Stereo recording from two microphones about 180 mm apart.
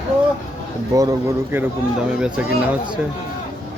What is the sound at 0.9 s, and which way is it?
Speech, 20° right (ahead or behind).